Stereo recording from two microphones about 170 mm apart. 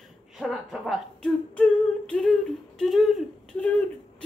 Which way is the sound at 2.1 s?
5° left (ahead or behind).